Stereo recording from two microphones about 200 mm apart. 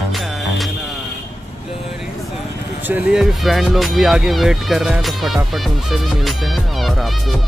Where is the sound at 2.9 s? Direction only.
5° right (ahead or behind).